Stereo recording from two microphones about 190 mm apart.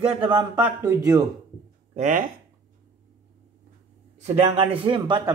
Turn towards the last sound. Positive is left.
turn(degrees=-25)  # may be behind; listen again after turning